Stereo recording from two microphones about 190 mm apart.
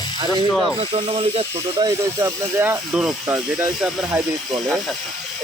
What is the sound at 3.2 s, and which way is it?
Speech, 20° right (ahead or behind).